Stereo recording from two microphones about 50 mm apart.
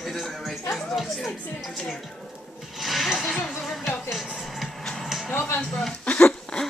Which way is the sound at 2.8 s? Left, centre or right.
Centre.